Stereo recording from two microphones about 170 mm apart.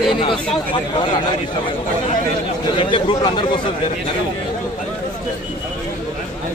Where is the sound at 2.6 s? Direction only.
30° left (ahead or behind).